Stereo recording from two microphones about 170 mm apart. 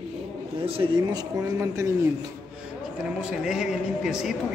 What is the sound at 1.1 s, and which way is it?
Speech, 20° right (ahead or behind).